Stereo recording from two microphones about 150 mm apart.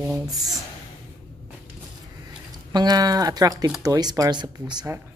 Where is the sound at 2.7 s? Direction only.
25° right (ahead or behind).